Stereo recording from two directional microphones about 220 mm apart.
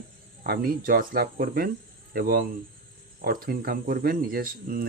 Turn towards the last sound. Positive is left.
turn(degrees=-40)  # may be behind; listen again after turning